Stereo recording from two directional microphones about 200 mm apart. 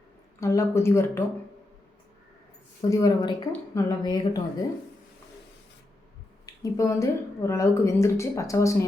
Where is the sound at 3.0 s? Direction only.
20° left (ahead or behind).